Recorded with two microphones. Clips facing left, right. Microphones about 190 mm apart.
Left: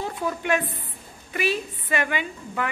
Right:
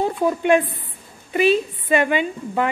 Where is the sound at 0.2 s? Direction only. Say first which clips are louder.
Right 7 dB; 25° right (ahead or behind).